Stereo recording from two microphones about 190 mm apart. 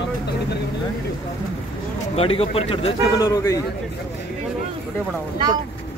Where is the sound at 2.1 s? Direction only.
30° left (ahead or behind).